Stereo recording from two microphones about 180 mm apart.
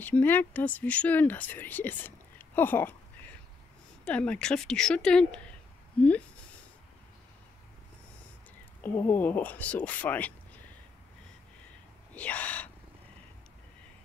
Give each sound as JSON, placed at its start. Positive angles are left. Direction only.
{"t": 0.0, "sound": "speech", "side_deg": 10}
{"t": 4.0, "sound": "a woman's voice", "side_deg": 5}
{"t": 8.8, "sound": "speech", "side_deg": 10}
{"t": 12.1, "sound": "gasp", "side_deg": 5}